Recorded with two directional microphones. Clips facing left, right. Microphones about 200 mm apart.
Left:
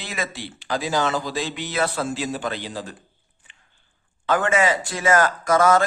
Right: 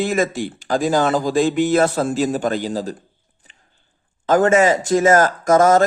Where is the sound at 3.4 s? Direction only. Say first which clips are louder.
Right 4 dB; 40° right (ahead or behind).